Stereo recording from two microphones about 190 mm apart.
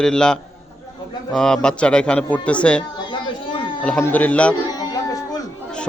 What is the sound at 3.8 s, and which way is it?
Speech, 5° left (ahead or behind).